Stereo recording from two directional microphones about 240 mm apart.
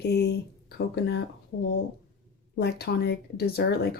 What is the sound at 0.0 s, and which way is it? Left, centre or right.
Speech, left.